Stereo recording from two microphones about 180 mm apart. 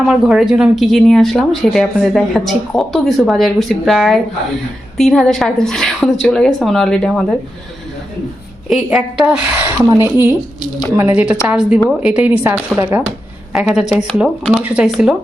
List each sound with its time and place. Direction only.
0.0 s speech: 5° right (ahead or behind)
8.7 s speech: 5° right (ahead or behind)
9.7 s a woman's voice: 20° right (ahead or behind)